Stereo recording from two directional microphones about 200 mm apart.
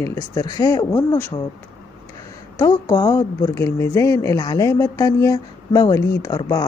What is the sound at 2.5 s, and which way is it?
Speech, 15° left (ahead or behind).